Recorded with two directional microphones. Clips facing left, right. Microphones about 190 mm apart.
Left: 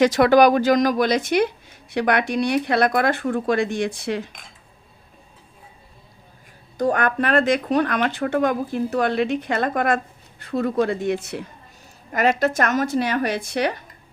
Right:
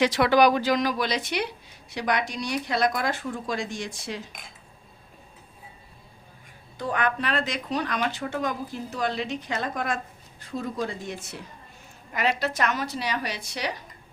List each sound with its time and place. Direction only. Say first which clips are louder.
0.0 s speech: left 5 dB; 45° left (ahead or behind)
1.9 s speech: left 7 dB; 60° left (ahead or behind)
6.7 s speech: left 7 dB; 45° left (ahead or behind); by 11.3 s 65° left (ahead or behind)
12.1 s speech: left 7 dB; 50° left (ahead or behind)